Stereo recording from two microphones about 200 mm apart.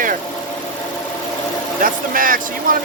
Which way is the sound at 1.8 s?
45° right (ahead or behind).